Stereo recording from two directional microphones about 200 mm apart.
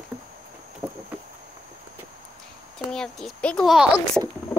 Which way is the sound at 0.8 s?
15° right (ahead or behind).